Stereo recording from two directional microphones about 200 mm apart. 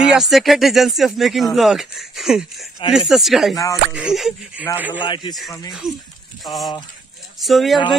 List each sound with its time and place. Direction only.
0.0 s speech: centre (ahead or behind)
3.5 s speech: 15° left (ahead or behind)
3.9 s a man's voice: 5° right (ahead or behind)
5.0 s speech: 25° left (ahead or behind)
5.7 s speech: centre (ahead or behind)